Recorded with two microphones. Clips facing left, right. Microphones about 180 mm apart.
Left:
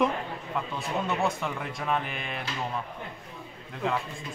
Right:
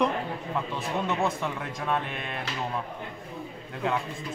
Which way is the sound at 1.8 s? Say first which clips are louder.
Right 1 dB; centre (ahead or behind).